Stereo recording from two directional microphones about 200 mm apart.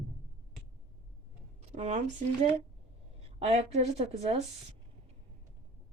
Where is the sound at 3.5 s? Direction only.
30° right (ahead or behind).